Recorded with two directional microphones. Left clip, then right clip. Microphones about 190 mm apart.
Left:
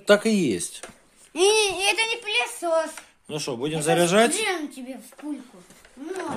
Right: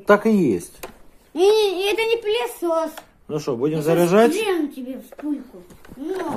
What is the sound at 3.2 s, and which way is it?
Speech, 15° left (ahead or behind).